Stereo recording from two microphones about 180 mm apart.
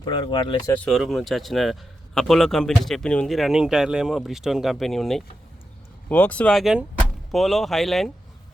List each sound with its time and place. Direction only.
0.0 s speech: 25° left (ahead or behind)
0.7 s a man's voice: centre (ahead or behind)